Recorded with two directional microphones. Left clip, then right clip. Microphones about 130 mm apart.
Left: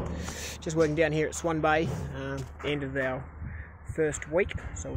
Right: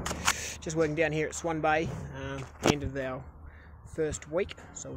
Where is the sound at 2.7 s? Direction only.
Centre (ahead or behind).